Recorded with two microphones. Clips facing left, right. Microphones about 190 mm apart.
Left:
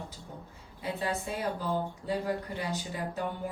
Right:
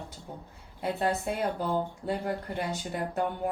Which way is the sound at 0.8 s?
60° right (ahead or behind).